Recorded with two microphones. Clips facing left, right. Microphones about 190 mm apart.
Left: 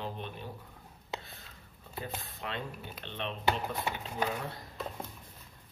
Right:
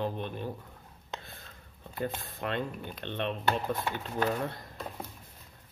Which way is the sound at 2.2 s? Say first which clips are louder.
Right 6 dB; 50° right (ahead or behind).